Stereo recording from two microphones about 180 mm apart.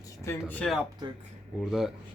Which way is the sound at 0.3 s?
10° left (ahead or behind).